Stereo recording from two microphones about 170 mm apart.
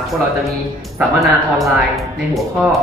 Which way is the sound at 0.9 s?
Centre (ahead or behind).